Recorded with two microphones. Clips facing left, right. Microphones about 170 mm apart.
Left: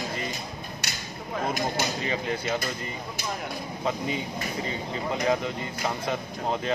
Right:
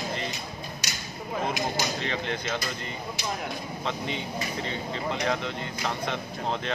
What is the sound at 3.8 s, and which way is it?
Speech, 5° left (ahead or behind).